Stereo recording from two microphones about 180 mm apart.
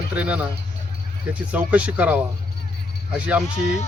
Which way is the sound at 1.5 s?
10° right (ahead or behind).